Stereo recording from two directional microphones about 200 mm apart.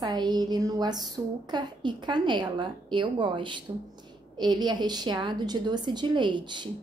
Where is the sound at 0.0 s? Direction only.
20° right (ahead or behind).